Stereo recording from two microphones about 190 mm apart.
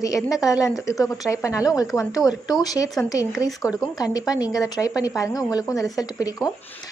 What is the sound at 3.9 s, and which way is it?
Speech, 20° left (ahead or behind).